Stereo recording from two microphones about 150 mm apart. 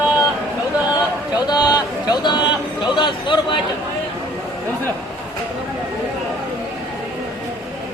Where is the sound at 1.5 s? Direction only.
25° left (ahead or behind).